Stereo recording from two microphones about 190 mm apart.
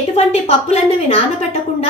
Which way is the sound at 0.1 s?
35° left (ahead or behind).